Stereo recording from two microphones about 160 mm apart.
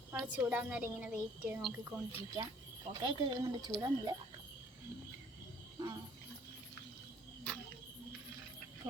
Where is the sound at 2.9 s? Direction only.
25° right (ahead or behind).